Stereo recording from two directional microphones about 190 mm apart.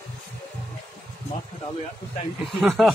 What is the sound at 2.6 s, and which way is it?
Speech, centre (ahead or behind).